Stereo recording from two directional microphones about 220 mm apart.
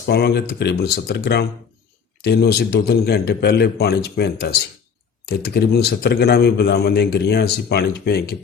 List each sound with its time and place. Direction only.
0.1 s a man's voice: 45° left (ahead or behind)